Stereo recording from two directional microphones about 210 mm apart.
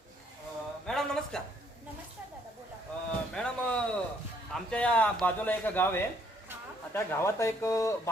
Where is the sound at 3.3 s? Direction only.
5° left (ahead or behind).